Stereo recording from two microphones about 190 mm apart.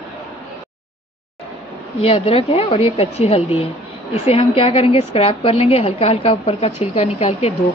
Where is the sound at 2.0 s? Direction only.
30° left (ahead or behind).